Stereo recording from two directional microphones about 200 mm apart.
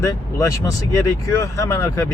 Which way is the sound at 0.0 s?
15° left (ahead or behind).